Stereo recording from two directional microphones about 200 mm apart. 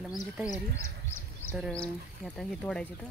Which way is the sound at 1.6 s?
5° left (ahead or behind).